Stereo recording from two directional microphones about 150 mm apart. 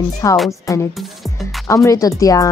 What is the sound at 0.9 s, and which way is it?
Music, centre (ahead or behind).